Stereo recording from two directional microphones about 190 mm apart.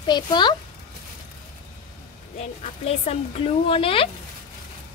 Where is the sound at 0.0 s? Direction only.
25° left (ahead or behind).